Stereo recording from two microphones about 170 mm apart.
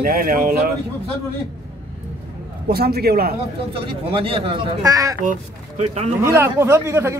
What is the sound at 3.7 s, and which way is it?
Speech, 30° right (ahead or behind).